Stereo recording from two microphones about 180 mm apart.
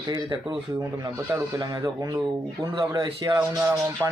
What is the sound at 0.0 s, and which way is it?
Speech, 25° right (ahead or behind).